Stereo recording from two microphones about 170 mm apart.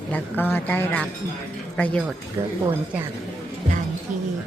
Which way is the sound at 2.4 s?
15° right (ahead or behind).